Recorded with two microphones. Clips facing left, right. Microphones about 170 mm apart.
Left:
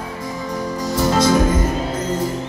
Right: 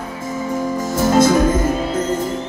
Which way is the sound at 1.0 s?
50° right (ahead or behind).